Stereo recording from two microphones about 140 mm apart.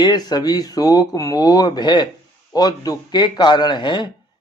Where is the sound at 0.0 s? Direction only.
30° left (ahead or behind).